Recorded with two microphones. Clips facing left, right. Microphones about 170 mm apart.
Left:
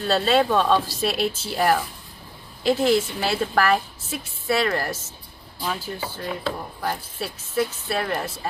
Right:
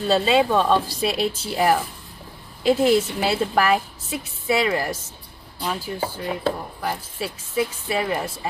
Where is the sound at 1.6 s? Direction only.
10° right (ahead or behind).